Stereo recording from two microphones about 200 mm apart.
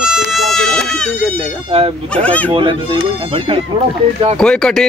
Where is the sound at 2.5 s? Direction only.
25° right (ahead or behind).